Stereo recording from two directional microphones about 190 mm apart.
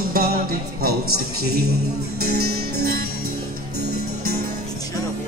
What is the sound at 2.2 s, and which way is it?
Music, 55° right (ahead or behind).